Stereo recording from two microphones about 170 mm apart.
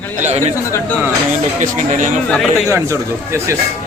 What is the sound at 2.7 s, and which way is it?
Speech, 15° right (ahead or behind).